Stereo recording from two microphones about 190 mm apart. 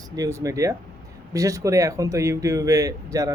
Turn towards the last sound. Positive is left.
turn(degrees=-15)  # may be behind; listen again after turning